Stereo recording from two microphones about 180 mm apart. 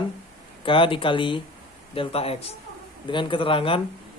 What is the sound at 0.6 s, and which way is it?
Speech, 30° left (ahead or behind).